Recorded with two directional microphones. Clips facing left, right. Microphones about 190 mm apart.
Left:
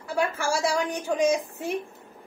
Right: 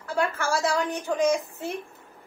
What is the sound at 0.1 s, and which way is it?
A woman's voice, 15° left (ahead or behind).